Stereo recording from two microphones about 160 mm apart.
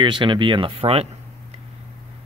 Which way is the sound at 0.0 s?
30° right (ahead or behind).